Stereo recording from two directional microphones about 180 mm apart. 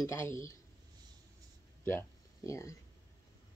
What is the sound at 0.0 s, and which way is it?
Speech, 15° left (ahead or behind).